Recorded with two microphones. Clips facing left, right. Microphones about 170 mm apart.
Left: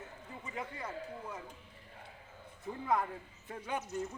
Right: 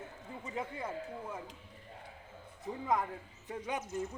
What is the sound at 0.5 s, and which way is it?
Speech, 25° right (ahead or behind).